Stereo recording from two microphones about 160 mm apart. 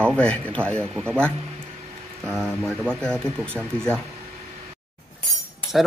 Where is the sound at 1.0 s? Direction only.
15° right (ahead or behind).